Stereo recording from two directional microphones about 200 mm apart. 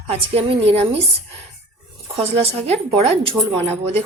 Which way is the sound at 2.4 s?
30° right (ahead or behind).